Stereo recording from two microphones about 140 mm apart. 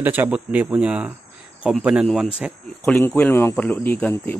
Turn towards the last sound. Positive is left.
turn(degrees=10)  # may be behind; listen again after turning